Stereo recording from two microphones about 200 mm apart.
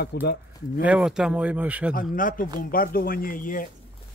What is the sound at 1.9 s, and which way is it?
Speech, 40° left (ahead or behind).